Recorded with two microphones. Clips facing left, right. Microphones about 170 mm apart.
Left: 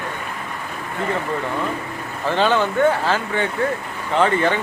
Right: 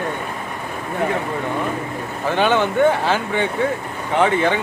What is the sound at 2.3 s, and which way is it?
Speech, 15° right (ahead or behind).